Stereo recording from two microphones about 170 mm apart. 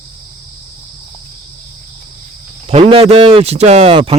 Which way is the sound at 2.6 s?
35° right (ahead or behind).